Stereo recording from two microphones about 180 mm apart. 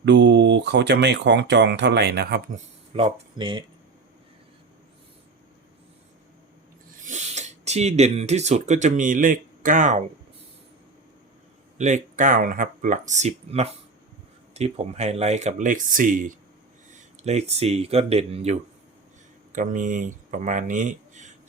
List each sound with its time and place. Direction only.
0.0 s speech: 75° right (ahead or behind)
2.9 s speech: 30° right (ahead or behind)
7.0 s speech: 40° right (ahead or behind)
11.8 s speech: 45° right (ahead or behind)
16.9 s speech: 35° right (ahead or behind)
19.5 s speech: 45° right (ahead or behind)